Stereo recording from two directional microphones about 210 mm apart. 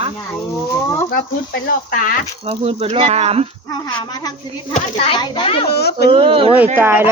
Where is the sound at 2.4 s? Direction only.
30° right (ahead or behind).